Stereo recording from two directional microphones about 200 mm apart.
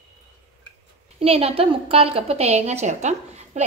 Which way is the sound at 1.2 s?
30° right (ahead or behind).